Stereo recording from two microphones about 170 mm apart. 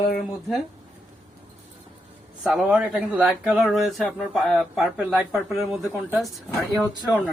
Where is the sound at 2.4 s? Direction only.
5° right (ahead or behind).